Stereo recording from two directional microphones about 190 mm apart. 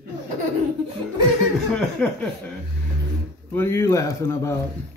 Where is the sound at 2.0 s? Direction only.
10° left (ahead or behind).